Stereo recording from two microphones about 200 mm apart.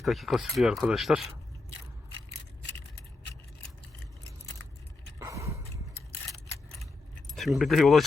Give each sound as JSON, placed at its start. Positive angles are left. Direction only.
{"t": 0.0, "sound": "speech", "side_deg": 0}
{"t": 5.2, "sound": "a sound", "side_deg": -15}
{"t": 7.3, "sound": "speech", "side_deg": 0}